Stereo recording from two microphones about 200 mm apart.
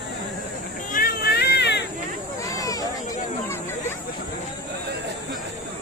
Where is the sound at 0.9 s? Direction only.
45° left (ahead or behind).